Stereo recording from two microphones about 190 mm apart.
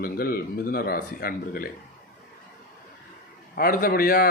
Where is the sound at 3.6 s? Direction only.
50° left (ahead or behind).